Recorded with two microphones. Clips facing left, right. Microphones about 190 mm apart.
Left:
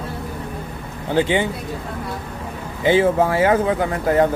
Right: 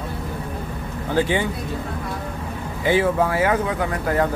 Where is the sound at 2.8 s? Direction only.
25° left (ahead or behind).